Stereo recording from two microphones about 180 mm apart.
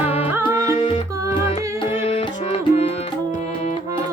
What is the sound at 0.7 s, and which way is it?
Music, 30° left (ahead or behind).